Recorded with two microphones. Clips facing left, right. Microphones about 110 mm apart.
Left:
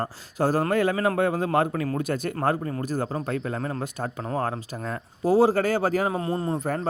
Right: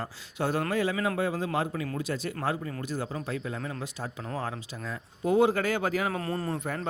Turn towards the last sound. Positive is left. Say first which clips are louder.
# left 6 dB
turn(degrees=40)  # may be behind; listen again after turning